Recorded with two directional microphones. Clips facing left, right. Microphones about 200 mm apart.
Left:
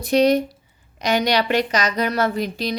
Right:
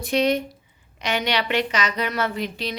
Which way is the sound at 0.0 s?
40° left (ahead or behind).